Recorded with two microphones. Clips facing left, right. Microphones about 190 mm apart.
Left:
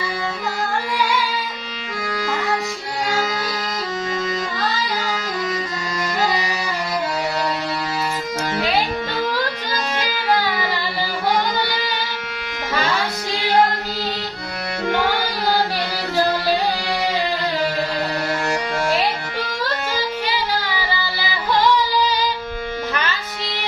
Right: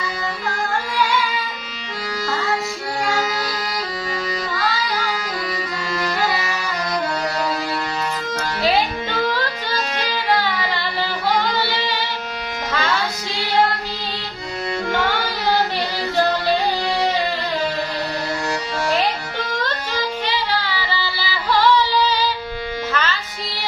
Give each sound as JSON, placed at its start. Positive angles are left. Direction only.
{"t": 20.2, "sound": "music", "side_deg": 15}